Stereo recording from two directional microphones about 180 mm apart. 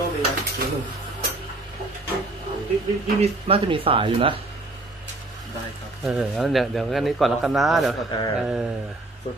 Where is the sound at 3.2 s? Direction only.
30° right (ahead or behind).